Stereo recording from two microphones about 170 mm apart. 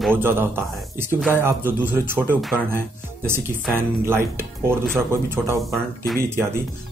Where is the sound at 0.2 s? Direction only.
15° right (ahead or behind).